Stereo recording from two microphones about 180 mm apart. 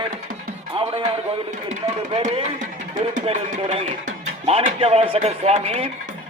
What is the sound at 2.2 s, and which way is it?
Speech, 35° right (ahead or behind).